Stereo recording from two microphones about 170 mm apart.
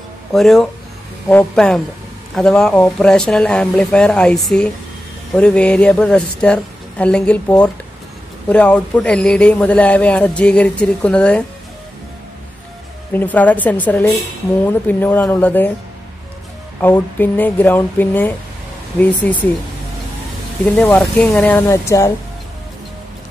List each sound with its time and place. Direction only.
0.3 s a man's voice: centre (ahead or behind)
13.1 s a man's voice: 10° left (ahead or behind)
16.8 s a man's voice: 10° left (ahead or behind)
20.6 s speech: 5° left (ahead or behind)
21.5 s a man's voice: 15° left (ahead or behind)